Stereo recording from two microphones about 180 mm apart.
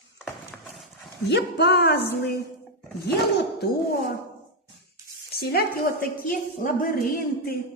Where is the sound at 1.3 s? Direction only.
70° left (ahead or behind).